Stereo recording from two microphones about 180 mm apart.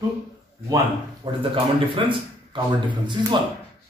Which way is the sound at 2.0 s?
25° right (ahead or behind).